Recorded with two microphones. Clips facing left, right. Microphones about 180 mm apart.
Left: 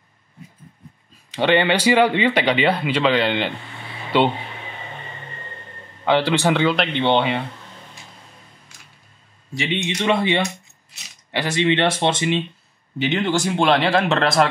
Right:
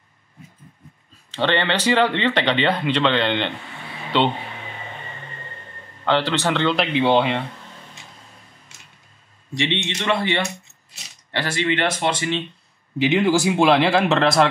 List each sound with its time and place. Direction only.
1.3 s speech: 10° left (ahead or behind)
6.0 s speech: 10° left (ahead or behind)
9.5 s speech: 5° left (ahead or behind)
10.0 s speech: 20° left (ahead or behind)
13.0 s speech: 5° right (ahead or behind)